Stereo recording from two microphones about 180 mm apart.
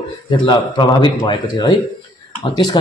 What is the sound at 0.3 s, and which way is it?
A man's voice, 25° left (ahead or behind).